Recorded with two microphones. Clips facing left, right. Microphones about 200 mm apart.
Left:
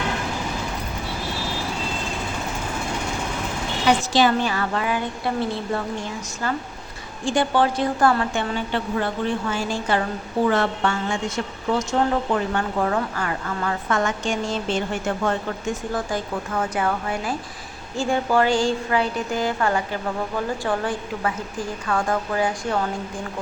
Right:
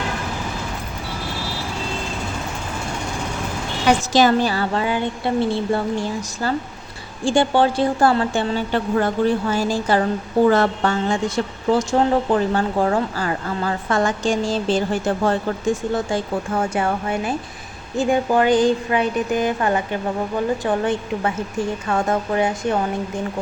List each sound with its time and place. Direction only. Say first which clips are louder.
4.1 s a woman's voice: right 3 dB; 40° right (ahead or behind); by 22.8 s 25° right (ahead or behind)